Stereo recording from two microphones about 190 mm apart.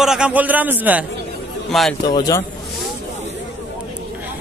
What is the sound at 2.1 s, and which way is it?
Speech, 20° left (ahead or behind).